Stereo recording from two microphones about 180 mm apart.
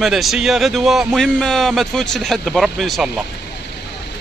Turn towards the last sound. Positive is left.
turn(degrees=0)  # may be behind; listen again after turning